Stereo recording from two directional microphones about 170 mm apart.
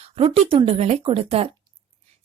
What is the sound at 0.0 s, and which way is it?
Speech, 35° right (ahead or behind).